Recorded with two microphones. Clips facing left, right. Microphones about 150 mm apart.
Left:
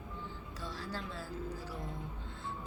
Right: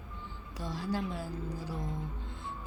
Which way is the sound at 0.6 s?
15° right (ahead or behind).